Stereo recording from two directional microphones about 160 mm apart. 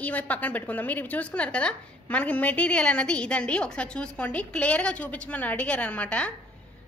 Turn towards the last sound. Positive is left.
turn(degrees=5)  # may be behind; listen again after turning